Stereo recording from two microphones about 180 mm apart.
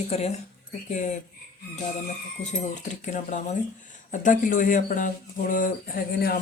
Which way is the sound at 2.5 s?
45° left (ahead or behind).